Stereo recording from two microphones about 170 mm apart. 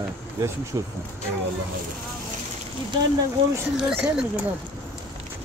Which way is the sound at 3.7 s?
5° right (ahead or behind).